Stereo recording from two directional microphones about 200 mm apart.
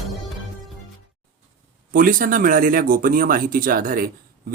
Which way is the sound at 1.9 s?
45° right (ahead or behind).